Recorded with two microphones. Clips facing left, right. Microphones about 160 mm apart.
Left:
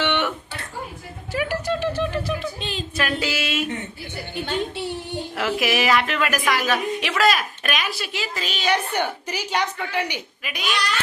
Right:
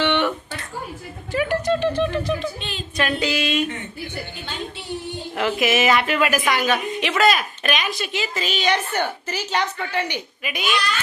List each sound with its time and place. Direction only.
0.0 s a sound: 10° left (ahead or behind)
2.6 s a woman's voice: 35° left (ahead or behind)
3.0 s a woman's voice: 5° left (ahead or behind)
4.4 s a woman's voice: 60° left (ahead or behind)
5.4 s a woman's voice: centre (ahead or behind)
8.9 s a woman's voice: 10° left (ahead or behind)
10.4 s a woman's voice: centre (ahead or behind)